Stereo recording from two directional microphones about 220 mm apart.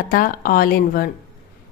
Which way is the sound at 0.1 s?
40° left (ahead or behind).